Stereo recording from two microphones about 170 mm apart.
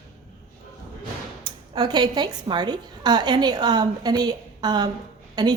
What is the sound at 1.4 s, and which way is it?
A woman's voice, 25° right (ahead or behind).